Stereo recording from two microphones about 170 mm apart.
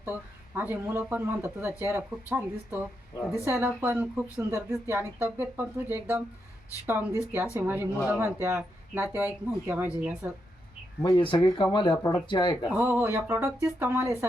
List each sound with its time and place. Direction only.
0.0 s speech: 10° right (ahead or behind)
11.0 s speech: 25° left (ahead or behind)
12.7 s speech: 10° right (ahead or behind)